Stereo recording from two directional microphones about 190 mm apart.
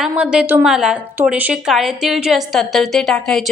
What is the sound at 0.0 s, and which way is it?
A woman's voice, 5° right (ahead or behind).